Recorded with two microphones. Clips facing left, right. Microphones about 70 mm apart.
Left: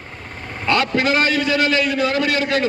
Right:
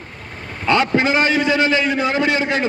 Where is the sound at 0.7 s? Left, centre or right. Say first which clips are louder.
Right 2 dB; right.